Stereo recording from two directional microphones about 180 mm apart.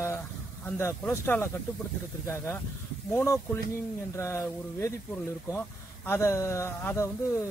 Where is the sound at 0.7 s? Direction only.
10° left (ahead or behind).